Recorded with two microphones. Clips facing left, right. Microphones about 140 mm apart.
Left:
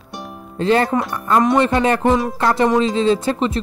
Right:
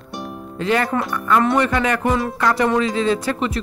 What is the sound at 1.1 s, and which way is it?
Speech, 30° left (ahead or behind).